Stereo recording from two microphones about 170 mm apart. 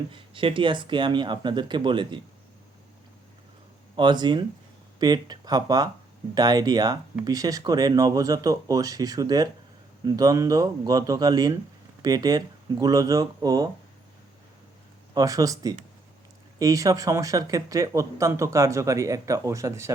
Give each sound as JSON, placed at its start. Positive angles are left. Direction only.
{"t": 0.1, "sound": "speech", "side_deg": -30}
{"t": 3.9, "sound": "speech", "side_deg": -25}
{"t": 15.1, "sound": "speech", "side_deg": -20}